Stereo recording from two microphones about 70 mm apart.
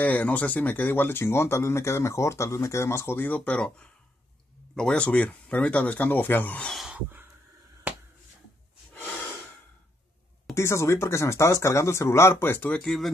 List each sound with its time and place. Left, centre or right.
0.0 s speech: left
4.7 s speech: centre; by 6.6 s left
6.9 s a sound: right
10.5 s speech: left
12.7 s speech: centre